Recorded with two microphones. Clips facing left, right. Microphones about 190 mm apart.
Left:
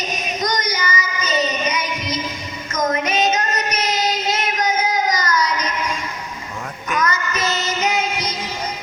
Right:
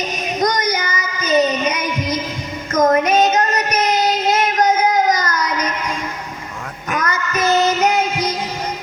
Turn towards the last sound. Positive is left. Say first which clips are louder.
# right 7 dB
turn(degrees=-55)  # may be behind; listen again after turning